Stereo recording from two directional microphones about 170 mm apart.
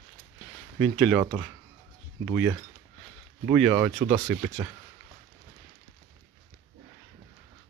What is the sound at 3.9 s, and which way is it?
Speech, 35° right (ahead or behind).